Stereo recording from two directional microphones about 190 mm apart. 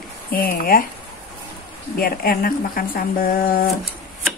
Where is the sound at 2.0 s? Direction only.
50° left (ahead or behind).